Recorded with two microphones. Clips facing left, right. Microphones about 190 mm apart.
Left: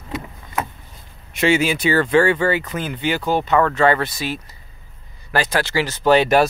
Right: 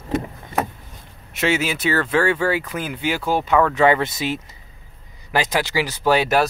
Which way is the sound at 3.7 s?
15° right (ahead or behind).